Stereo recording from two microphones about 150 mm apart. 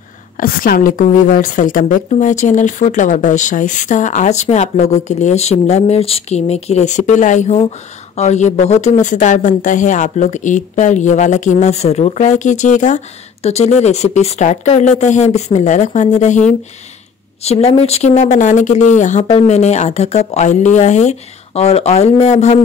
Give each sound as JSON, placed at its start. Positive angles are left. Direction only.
{"t": 0.4, "sound": "speech", "side_deg": 75}